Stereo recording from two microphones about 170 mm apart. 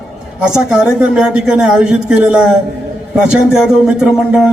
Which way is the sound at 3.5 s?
5° right (ahead or behind).